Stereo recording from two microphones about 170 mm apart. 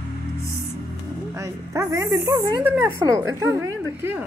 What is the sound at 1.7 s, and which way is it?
A woman's voice, 20° right (ahead or behind).